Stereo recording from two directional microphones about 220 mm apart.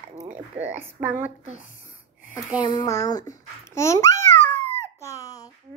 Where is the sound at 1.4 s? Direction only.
30° right (ahead or behind).